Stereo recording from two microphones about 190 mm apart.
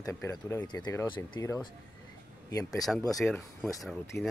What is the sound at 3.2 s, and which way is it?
Speech, 5° left (ahead or behind).